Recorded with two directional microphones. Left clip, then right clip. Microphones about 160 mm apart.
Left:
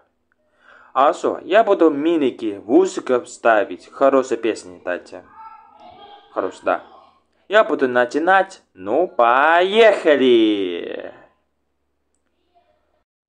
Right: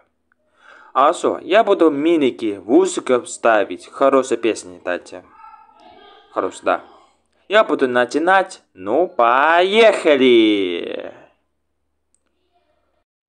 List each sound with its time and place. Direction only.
0.6 s speech: 25° right (ahead or behind)
6.3 s speech: 25° right (ahead or behind)